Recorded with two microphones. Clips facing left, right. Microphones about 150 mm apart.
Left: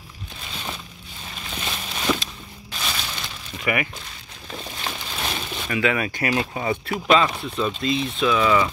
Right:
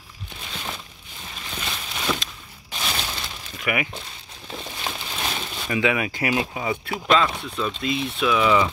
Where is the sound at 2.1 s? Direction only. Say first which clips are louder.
Left 3 dB; 10° left (ahead or behind).